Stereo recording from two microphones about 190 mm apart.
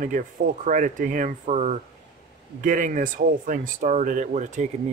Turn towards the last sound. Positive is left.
turn(degrees=-40)  # may be behind; listen again after turning